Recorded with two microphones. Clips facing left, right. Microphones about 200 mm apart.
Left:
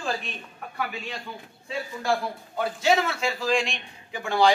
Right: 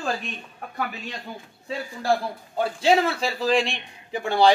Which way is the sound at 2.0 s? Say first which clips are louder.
Right 3 dB; 30° right (ahead or behind).